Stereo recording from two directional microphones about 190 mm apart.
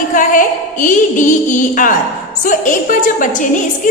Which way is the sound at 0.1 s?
45° left (ahead or behind).